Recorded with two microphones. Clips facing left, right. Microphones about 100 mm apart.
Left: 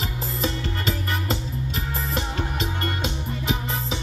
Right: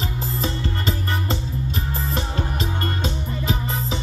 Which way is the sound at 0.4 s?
35° right (ahead or behind).